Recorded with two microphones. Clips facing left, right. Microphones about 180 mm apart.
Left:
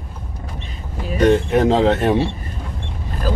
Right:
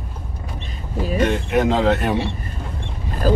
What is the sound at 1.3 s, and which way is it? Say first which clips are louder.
Speech: left 9 dB; 35° left (ahead or behind).